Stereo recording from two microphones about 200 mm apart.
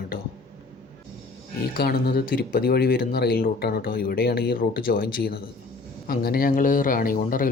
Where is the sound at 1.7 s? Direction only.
50° left (ahead or behind).